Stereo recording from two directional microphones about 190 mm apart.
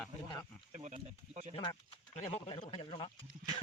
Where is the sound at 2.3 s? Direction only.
30° left (ahead or behind).